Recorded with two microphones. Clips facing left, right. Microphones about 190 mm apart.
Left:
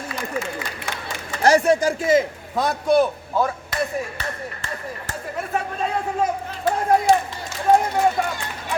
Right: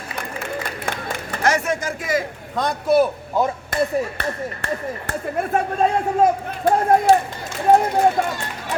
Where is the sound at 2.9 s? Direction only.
5° right (ahead or behind).